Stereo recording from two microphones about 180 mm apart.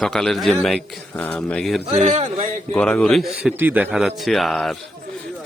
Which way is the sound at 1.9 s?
40° right (ahead or behind).